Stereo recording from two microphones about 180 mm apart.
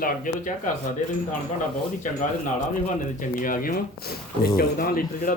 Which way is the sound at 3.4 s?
50° left (ahead or behind).